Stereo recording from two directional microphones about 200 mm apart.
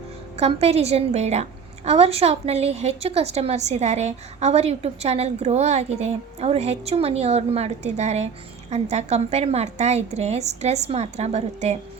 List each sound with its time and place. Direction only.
0.3 s a woman's voice: 30° right (ahead or behind)